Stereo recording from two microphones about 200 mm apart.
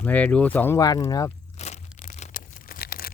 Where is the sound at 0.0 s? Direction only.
5° left (ahead or behind).